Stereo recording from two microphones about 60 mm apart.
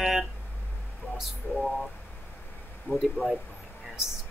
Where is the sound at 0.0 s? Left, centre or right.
Centre.